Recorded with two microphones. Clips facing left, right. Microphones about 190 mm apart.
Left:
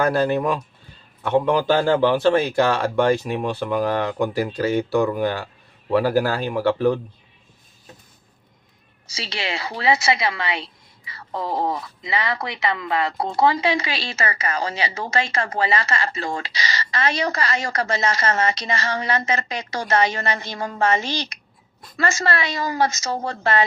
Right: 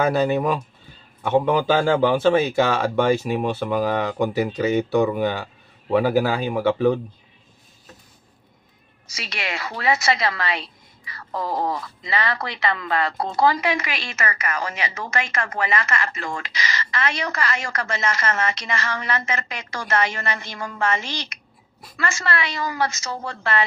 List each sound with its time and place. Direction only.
0.0 s speech: centre (ahead or behind)
6.2 s speech: 15° right (ahead or behind)
9.0 s a woman's voice: 30° left (ahead or behind)